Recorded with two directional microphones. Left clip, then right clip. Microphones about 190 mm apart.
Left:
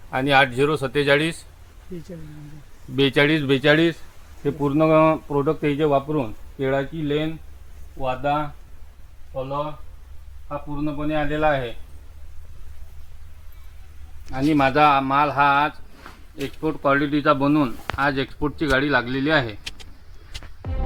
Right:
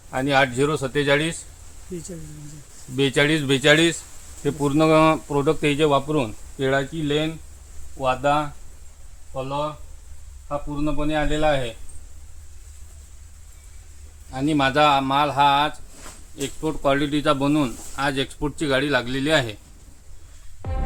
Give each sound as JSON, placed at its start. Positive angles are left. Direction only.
{"t": 0.1, "sound": "speech", "side_deg": 30}
{"t": 2.9, "sound": "speech", "side_deg": 30}
{"t": 4.4, "sound": "speech", "side_deg": 0}
{"t": 10.5, "sound": "speech", "side_deg": -10}
{"t": 14.3, "sound": "speech", "side_deg": 5}
{"t": 20.6, "sound": "music", "side_deg": 0}